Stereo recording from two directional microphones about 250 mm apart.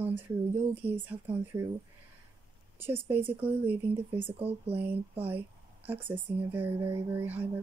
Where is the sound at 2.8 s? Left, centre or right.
Centre.